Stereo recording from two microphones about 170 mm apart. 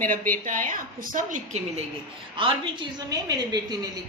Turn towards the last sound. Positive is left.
turn(degrees=-25)  # may be behind; listen again after turning